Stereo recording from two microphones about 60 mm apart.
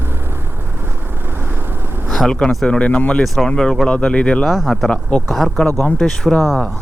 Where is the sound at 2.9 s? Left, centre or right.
Left.